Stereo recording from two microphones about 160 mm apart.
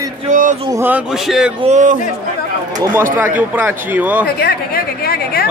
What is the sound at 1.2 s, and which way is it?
Speech, 5° right (ahead or behind).